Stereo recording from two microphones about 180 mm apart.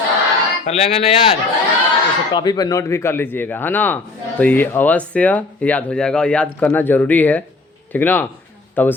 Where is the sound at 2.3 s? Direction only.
20° left (ahead or behind).